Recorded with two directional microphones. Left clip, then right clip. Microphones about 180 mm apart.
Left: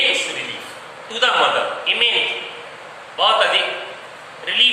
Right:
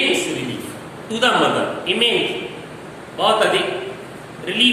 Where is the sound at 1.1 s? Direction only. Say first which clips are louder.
Even; 15° right (ahead or behind).